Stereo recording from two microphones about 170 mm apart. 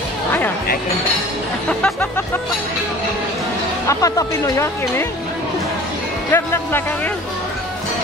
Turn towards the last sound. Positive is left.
turn(degrees=10)  # may be behind; listen again after turning